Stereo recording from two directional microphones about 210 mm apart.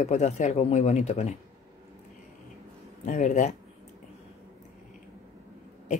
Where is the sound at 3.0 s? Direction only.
35° left (ahead or behind).